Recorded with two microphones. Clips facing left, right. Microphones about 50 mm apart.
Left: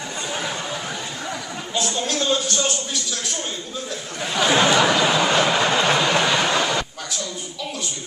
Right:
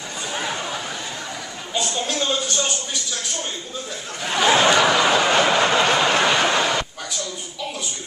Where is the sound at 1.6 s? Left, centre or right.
Centre.